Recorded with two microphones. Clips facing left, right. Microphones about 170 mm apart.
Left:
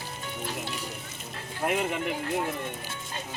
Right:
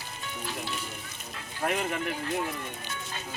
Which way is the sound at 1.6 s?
15° left (ahead or behind).